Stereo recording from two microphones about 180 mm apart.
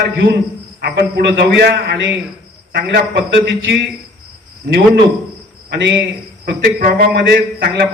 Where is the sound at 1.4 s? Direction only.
65° right (ahead or behind).